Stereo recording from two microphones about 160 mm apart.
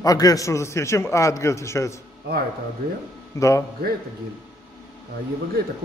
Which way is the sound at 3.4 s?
20° left (ahead or behind).